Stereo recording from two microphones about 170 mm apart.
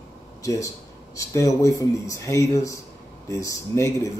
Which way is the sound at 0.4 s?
20° left (ahead or behind).